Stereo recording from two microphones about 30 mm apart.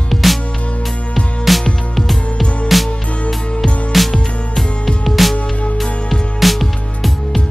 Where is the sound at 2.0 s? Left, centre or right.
Centre.